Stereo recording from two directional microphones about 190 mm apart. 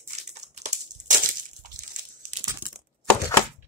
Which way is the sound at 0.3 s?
35° right (ahead or behind).